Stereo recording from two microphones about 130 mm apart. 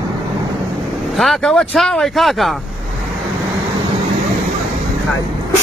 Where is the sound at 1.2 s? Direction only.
Centre (ahead or behind).